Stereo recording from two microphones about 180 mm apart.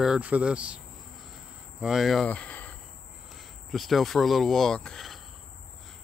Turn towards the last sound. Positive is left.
turn(degrees=5)  # may be behind; listen again after turning